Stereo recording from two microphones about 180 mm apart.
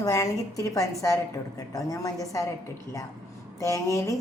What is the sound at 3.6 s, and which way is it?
Speech, 20° left (ahead or behind).